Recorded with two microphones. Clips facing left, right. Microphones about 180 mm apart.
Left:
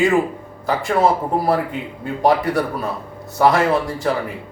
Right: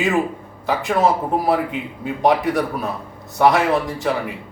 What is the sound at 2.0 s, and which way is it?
A man's voice, centre (ahead or behind).